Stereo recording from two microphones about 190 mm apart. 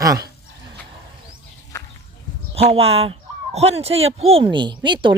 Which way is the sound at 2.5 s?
30° right (ahead or behind).